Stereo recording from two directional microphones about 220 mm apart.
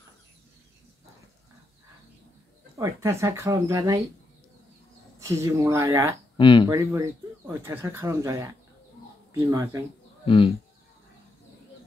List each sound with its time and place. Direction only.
2.8 s speech: 15° right (ahead or behind)
5.2 s speech: 15° right (ahead or behind)
6.3 s speech: 20° left (ahead or behind)
6.7 s speech: 15° right (ahead or behind)
10.2 s speech: 25° left (ahead or behind)